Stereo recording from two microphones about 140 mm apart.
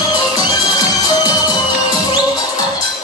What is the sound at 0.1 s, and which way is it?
Music, 30° left (ahead or behind).